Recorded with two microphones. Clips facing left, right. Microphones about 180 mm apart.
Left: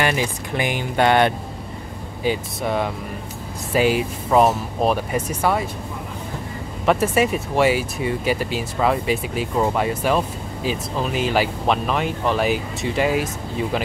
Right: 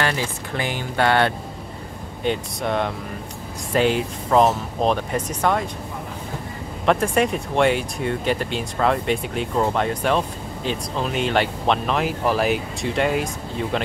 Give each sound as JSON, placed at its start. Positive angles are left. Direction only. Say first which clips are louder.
{"t": 0.0, "sound": "speech", "louder": "left 2 dB", "side_deg": 15}
{"t": 2.2, "sound": "speech", "louder": "left 1 dB", "side_deg": 5}
{"t": 6.9, "sound": "speech", "louder": "left 1 dB", "side_deg": 5}